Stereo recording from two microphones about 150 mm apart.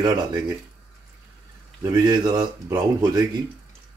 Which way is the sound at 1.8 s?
30° right (ahead or behind).